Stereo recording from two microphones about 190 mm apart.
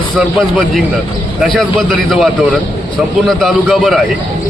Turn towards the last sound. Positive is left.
turn(degrees=0)  # may be behind; listen again after turning